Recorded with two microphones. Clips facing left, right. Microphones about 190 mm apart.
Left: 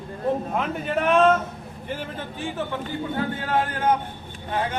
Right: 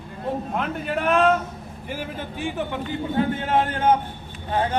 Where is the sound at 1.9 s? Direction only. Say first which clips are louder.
Right 1 dB; 10° right (ahead or behind).